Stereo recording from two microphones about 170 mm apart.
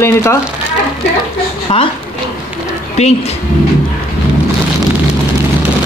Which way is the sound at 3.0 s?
40° left (ahead or behind).